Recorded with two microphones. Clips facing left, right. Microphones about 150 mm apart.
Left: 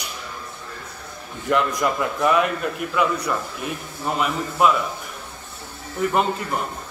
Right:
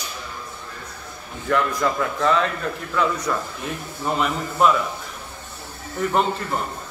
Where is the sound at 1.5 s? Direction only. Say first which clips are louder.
Even; 20° left (ahead or behind).